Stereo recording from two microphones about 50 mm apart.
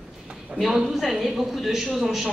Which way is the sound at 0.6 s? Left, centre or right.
Centre.